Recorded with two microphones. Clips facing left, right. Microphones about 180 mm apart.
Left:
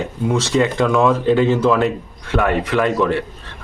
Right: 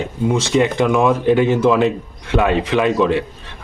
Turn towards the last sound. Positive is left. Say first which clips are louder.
# right 2 dB
turn(degrees=-20)  # may be behind; listen again after turning